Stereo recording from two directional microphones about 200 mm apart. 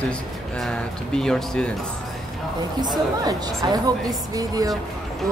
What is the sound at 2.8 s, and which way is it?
Speech, 20° right (ahead or behind).